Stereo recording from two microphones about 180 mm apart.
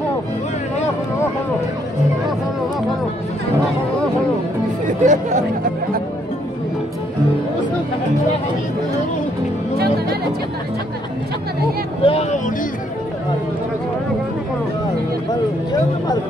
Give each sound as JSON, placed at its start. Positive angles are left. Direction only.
{"t": 5.0, "sound": "speech", "side_deg": -40}
{"t": 12.0, "sound": "vehicle", "side_deg": 35}